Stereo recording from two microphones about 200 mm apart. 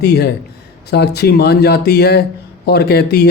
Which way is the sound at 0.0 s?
55° left (ahead or behind).